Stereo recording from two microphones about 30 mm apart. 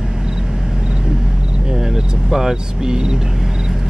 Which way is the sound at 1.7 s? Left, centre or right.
Centre.